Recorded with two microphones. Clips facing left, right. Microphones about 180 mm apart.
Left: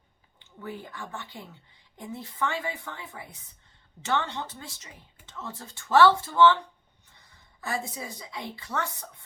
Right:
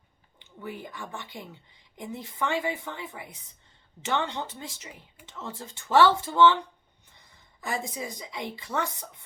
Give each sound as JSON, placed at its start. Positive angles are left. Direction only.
{"t": 0.3, "sound": "speech", "side_deg": -15}
{"t": 7.6, "sound": "speech", "side_deg": -15}